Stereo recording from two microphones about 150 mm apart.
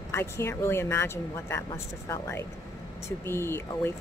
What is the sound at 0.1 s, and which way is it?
Speech, 15° left (ahead or behind).